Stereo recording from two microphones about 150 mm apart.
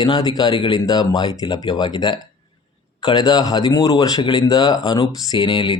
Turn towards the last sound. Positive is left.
turn(degrees=35)  # may be behind; listen again after turning